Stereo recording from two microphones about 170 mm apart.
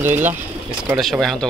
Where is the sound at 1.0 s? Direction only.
Centre (ahead or behind).